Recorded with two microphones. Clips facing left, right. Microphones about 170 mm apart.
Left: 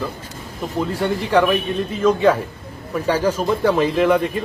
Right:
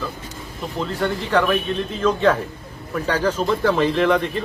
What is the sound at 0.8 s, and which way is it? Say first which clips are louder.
A man's voice: left 2 dB; 10° left (ahead or behind).